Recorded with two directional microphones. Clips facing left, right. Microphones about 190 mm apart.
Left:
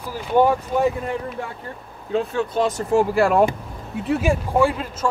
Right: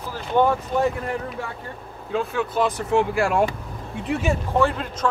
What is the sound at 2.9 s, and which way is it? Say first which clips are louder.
Speech: left 5 dB; 35° left (ahead or behind).